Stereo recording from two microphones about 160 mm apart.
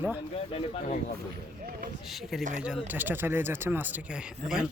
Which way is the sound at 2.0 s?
Centre (ahead or behind).